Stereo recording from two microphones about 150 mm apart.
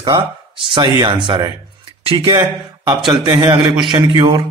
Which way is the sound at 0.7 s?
30° right (ahead or behind).